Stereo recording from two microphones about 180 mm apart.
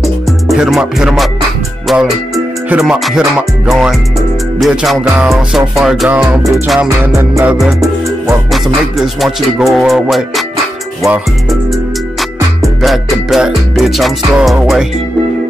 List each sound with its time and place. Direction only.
0.0 s music: centre (ahead or behind)
7.2 s music: 15° right (ahead or behind)
8.5 s music: centre (ahead or behind)